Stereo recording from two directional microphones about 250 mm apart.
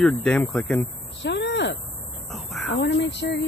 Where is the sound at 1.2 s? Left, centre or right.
Left.